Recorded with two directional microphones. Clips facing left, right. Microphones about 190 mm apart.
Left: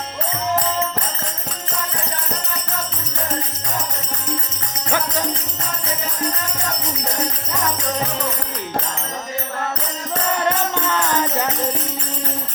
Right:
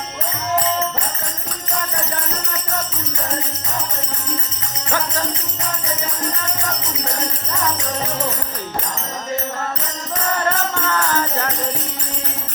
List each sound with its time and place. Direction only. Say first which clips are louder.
10.4 s music: left 1 dB; 20° left (ahead or behind)